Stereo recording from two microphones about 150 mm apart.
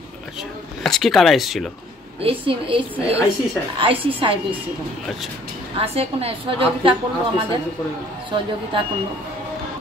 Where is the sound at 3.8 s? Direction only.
35° right (ahead or behind).